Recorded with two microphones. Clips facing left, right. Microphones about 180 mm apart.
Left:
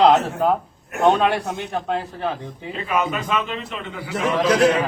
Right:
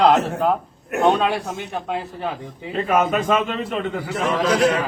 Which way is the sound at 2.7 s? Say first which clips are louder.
Right 5 dB; 45° right (ahead or behind).